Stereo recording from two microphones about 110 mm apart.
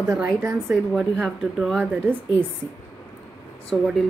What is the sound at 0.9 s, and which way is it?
Speech, 5° right (ahead or behind).